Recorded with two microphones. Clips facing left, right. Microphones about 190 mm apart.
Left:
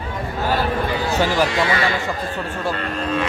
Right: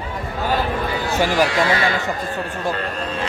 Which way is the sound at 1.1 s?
10° right (ahead or behind).